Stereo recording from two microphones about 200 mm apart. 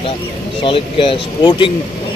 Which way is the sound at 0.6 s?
25° left (ahead or behind).